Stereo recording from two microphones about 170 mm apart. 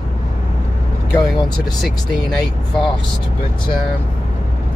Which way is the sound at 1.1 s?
25° left (ahead or behind).